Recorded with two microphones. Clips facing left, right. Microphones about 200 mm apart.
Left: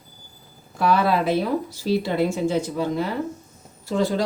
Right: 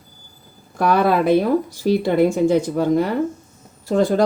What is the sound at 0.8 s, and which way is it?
Speech, 50° right (ahead or behind).